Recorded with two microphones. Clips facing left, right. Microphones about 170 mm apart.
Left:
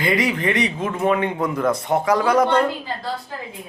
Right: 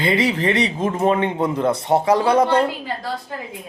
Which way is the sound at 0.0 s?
30° right (ahead or behind).